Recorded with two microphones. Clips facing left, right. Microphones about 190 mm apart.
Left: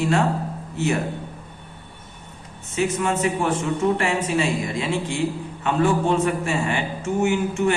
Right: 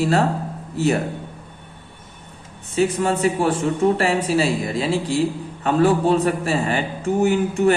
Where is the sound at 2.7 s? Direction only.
35° right (ahead or behind).